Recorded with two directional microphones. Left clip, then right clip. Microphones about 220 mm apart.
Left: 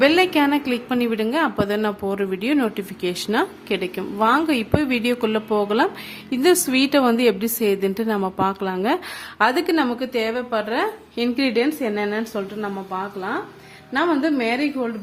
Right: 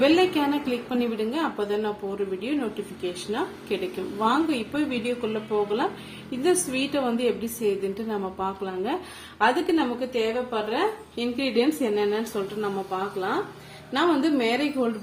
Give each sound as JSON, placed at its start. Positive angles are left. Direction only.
{"t": 0.0, "sound": "a woman's voice", "side_deg": 45}
{"t": 13.9, "sound": "a woman's voice", "side_deg": 35}